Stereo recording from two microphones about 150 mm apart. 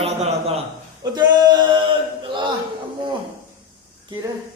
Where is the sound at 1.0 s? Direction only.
30° right (ahead or behind).